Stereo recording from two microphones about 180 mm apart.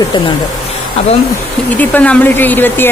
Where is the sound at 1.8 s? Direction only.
10° left (ahead or behind).